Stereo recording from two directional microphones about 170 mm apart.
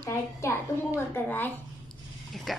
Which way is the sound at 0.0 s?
15° left (ahead or behind).